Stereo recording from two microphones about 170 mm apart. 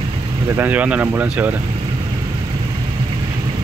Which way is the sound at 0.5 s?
10° right (ahead or behind).